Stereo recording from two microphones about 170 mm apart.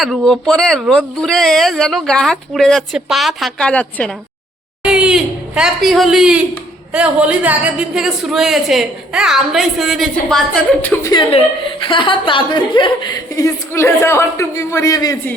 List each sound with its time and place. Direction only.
0.0 s speech: centre (ahead or behind)
4.8 s speech: 5° right (ahead or behind)
11.0 s a woman's voice: 25° left (ahead or behind)